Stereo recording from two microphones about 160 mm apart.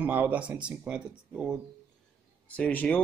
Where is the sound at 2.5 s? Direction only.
10° left (ahead or behind).